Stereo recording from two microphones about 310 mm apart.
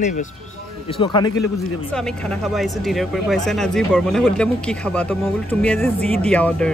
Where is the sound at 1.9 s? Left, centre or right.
Centre.